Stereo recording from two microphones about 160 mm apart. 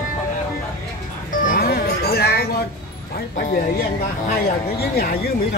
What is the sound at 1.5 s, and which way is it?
Music, 70° left (ahead or behind).